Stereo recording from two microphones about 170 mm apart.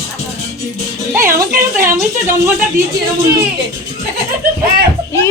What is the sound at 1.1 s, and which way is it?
Speech, 15° right (ahead or behind).